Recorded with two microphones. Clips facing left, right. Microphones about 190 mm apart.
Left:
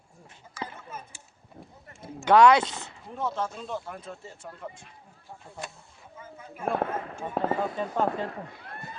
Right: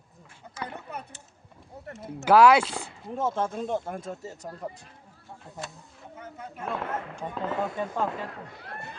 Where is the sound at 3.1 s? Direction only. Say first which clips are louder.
Right 3 dB; 50° right (ahead or behind).